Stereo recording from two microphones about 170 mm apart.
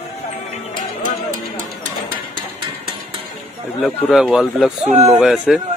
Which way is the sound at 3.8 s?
Centre (ahead or behind).